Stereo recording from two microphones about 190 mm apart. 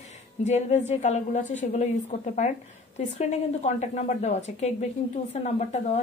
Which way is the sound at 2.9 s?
35° left (ahead or behind).